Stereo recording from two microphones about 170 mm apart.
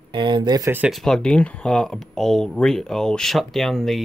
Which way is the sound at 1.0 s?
Centre (ahead or behind).